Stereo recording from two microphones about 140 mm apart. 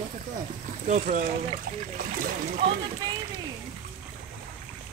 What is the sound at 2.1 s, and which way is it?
Splash, 85° right.